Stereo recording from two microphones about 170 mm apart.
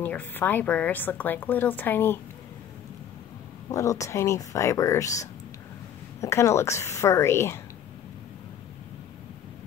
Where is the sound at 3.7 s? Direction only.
20° left (ahead or behind).